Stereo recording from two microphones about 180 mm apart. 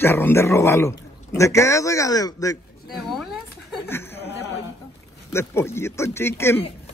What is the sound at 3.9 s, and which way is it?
Chatter, 15° left (ahead or behind).